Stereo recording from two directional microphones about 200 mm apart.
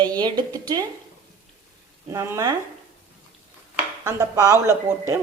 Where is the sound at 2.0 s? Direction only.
15° right (ahead or behind).